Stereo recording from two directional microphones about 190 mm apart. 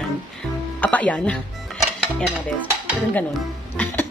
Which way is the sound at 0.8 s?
5° left (ahead or behind).